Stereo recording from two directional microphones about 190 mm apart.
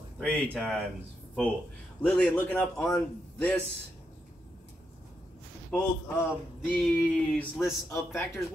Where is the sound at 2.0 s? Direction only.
10° left (ahead or behind).